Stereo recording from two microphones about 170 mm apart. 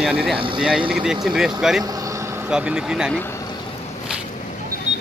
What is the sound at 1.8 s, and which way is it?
Vehicle, 20° right (ahead or behind).